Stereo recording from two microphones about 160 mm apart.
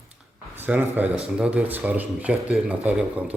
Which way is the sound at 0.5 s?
10° right (ahead or behind).